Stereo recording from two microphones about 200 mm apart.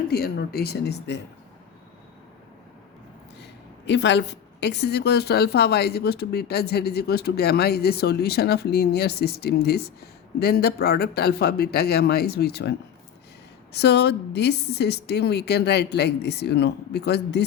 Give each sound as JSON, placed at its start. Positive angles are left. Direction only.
{"t": 0.1, "sound": "a woman's voice", "side_deg": 50}
{"t": 3.4, "sound": "a woman's voice", "side_deg": 60}
{"t": 13.7, "sound": "speech", "side_deg": 55}